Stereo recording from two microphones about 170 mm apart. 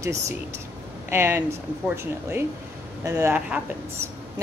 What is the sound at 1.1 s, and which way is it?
Speech, 15° right (ahead or behind).